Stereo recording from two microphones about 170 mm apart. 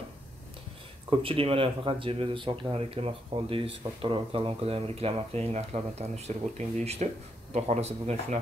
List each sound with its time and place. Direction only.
1.1 s speech: 35° right (ahead or behind)